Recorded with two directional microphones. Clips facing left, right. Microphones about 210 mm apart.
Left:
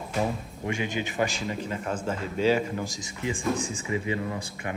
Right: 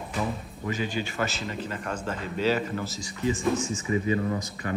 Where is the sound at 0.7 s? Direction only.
15° left (ahead or behind).